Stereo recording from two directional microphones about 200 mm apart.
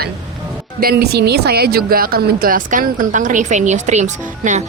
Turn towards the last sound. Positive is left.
turn(degrees=-35)  # may be behind; listen again after turning